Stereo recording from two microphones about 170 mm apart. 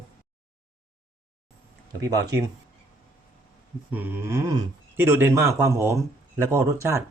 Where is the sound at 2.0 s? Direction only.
20° right (ahead or behind).